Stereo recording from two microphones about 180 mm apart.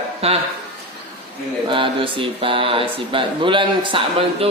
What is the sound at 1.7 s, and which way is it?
A woman's voice, 30° right (ahead or behind).